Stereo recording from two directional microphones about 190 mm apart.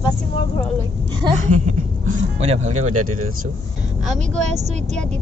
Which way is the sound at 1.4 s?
40° right (ahead or behind).